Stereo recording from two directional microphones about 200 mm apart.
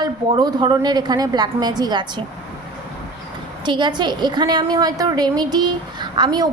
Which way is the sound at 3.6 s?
25° right (ahead or behind).